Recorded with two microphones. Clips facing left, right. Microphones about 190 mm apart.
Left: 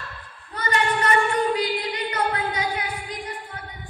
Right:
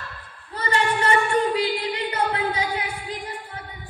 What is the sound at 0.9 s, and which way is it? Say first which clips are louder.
Singing: right 1 dB; 30° right (ahead or behind).